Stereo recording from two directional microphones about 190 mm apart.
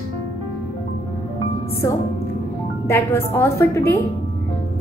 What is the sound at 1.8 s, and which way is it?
Speech, 15° left (ahead or behind).